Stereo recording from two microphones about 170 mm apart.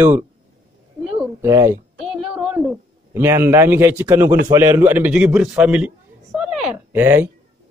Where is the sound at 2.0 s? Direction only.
5° right (ahead or behind).